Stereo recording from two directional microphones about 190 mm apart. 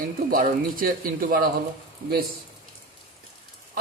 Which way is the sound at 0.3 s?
50° right (ahead or behind).